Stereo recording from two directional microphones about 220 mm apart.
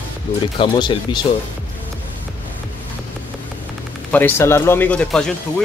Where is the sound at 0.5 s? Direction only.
20° left (ahead or behind).